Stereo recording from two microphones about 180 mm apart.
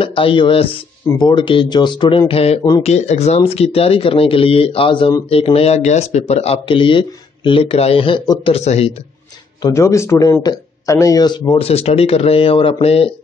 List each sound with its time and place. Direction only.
0.0 s speech: 30° left (ahead or behind)
9.6 s speech: 20° left (ahead or behind)